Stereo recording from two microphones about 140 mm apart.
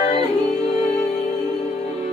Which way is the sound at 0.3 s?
5° left (ahead or behind).